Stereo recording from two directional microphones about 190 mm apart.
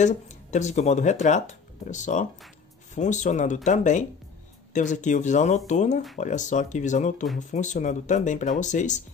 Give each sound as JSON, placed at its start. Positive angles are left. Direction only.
{"t": 0.0, "sound": "speech", "side_deg": 40}